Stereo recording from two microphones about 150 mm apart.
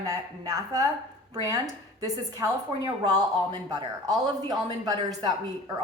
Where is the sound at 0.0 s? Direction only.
20° right (ahead or behind).